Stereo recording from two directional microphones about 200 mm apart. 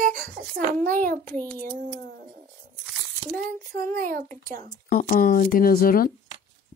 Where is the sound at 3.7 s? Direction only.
45° right (ahead or behind).